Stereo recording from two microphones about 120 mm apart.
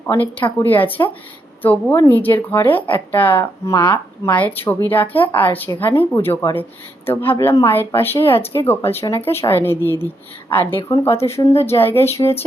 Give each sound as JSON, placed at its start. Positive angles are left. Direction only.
{"t": 0.0, "sound": "speech", "side_deg": 20}
{"t": 3.8, "sound": "a woman's voice", "side_deg": 40}
{"t": 4.4, "sound": "speech", "side_deg": 15}